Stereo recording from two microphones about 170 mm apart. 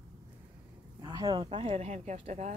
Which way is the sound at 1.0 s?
25° right (ahead or behind).